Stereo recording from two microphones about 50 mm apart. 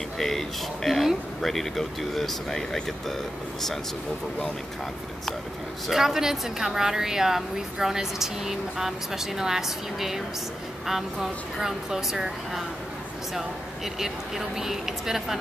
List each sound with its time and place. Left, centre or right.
0.2 s speech: centre
5.9 s a woman's voice: centre
13.9 s a woman's voice: centre